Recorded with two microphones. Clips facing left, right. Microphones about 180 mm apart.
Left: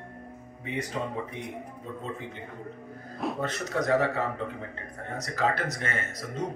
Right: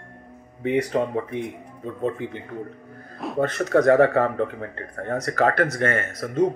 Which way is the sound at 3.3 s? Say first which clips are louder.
Right 14 dB; 60° right (ahead or behind).